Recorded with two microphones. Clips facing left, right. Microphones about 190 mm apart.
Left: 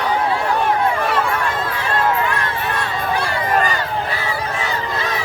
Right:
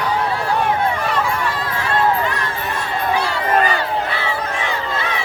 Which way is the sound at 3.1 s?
45° left (ahead or behind).